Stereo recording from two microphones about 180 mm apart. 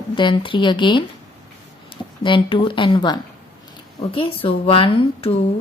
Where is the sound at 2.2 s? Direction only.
25° left (ahead or behind).